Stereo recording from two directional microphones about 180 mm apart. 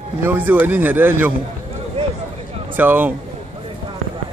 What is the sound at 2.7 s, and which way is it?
Speech, 10° right (ahead or behind).